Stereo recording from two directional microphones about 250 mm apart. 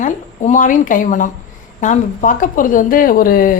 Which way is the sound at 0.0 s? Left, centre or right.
Left.